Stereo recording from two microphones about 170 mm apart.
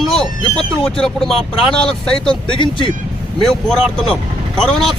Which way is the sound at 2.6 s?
30° left (ahead or behind).